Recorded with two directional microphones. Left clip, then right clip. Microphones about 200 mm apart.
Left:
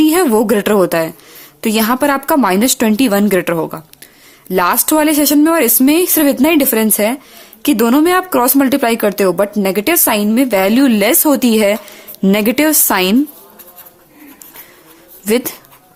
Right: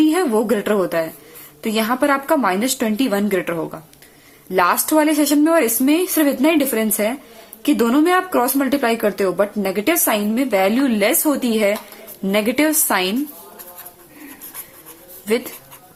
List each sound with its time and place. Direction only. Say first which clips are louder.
0.0 s speech: left 5 dB; 50° left (ahead or behind)